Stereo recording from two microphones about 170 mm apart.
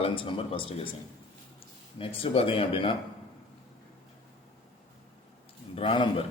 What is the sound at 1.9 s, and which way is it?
Speech, 35° left (ahead or behind).